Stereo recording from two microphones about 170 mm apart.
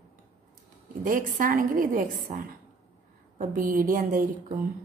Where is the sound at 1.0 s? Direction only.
50° right (ahead or behind).